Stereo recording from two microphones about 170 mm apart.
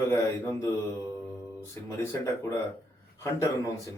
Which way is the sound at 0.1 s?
15° left (ahead or behind).